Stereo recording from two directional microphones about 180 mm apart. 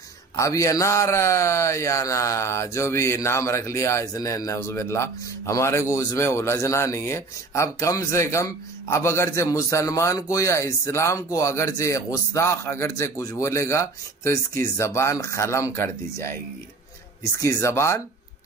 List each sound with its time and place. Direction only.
0.4 s a man's voice: 15° left (ahead or behind)